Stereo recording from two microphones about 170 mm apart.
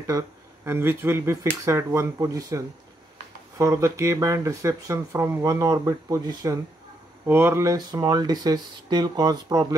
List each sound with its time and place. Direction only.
0.7 s speech: 15° right (ahead or behind)